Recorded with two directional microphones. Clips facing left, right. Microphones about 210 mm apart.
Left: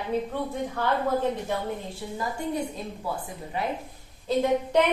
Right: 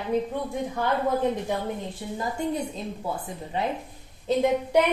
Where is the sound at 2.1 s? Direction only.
25° right (ahead or behind).